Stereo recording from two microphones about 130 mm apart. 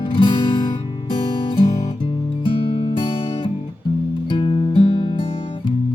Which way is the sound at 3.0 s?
45° left (ahead or behind).